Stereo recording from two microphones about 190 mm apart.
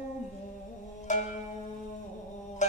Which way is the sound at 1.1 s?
40° left (ahead or behind).